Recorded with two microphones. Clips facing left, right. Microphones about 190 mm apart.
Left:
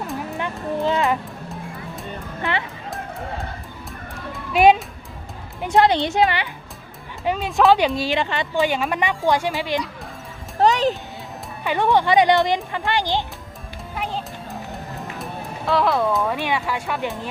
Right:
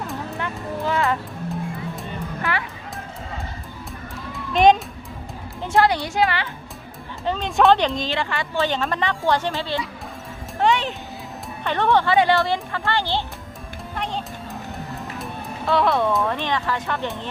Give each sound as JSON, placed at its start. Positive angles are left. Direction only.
{"t": 0.3, "sound": "music", "side_deg": 20}
{"t": 2.4, "sound": "music", "side_deg": 20}
{"t": 4.3, "sound": "children playing", "side_deg": 5}
{"t": 5.6, "sound": "a child's voice", "side_deg": 20}
{"t": 7.3, "sound": "speech", "side_deg": 5}
{"t": 10.6, "sound": "music", "side_deg": 40}
{"t": 11.6, "sound": "speech", "side_deg": 10}
{"t": 13.9, "sound": "music", "side_deg": 5}
{"t": 15.2, "sound": "speech", "side_deg": 0}